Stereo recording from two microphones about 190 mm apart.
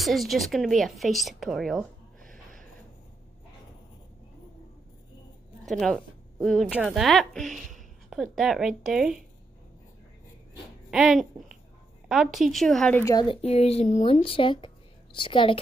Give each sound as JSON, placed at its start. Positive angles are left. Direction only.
{"t": 0.0, "sound": "speech", "side_deg": 0}
{"t": 5.7, "sound": "a woman's voice", "side_deg": 5}
{"t": 10.9, "sound": "speech", "side_deg": -5}
{"t": 13.0, "sound": "speech", "side_deg": 20}